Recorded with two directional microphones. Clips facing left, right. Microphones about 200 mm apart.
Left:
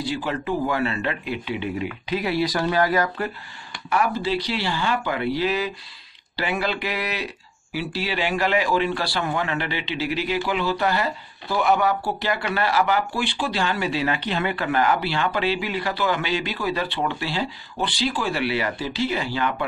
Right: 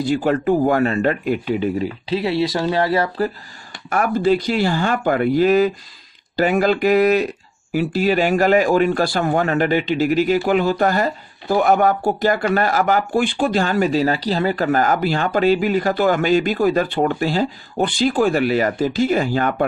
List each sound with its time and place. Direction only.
0.0 s speech: 50° right (ahead or behind); by 3.3 s 30° right (ahead or behind)
3.9 s speech: 50° right (ahead or behind)